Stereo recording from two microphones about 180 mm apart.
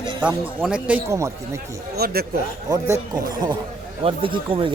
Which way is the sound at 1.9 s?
60° right (ahead or behind).